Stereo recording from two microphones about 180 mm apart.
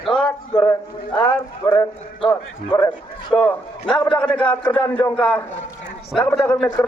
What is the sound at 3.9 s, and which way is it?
Speech, 25° left (ahead or behind).